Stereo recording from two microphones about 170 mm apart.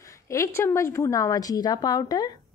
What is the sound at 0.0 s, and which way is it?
A woman's voice, 15° left (ahead or behind).